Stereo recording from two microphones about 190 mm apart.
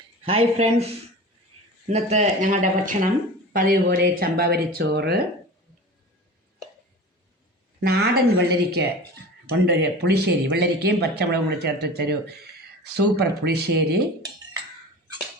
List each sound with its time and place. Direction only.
0.3 s speech: 30° right (ahead or behind)
1.9 s speech: 35° right (ahead or behind); by 5.2 s 60° right (ahead or behind)
7.8 s speech: 55° right (ahead or behind)